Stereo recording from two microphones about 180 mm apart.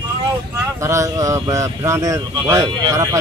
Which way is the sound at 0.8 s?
15° right (ahead or behind).